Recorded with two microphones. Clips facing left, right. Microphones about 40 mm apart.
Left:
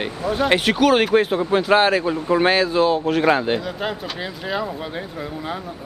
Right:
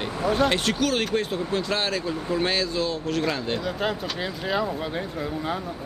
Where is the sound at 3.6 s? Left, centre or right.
Centre.